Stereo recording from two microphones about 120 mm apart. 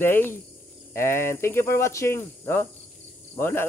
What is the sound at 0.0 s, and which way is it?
Speech, 15° left (ahead or behind).